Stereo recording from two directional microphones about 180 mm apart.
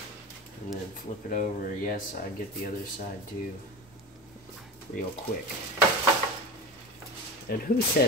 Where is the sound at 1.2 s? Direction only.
50° left (ahead or behind).